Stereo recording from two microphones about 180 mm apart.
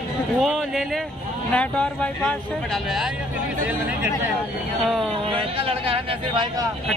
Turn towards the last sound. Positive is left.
turn(degrees=-25)  # may be behind; listen again after turning